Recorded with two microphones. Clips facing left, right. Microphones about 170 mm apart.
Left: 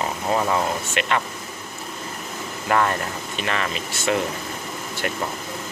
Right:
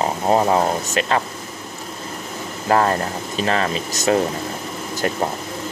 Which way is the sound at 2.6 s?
35° right (ahead or behind).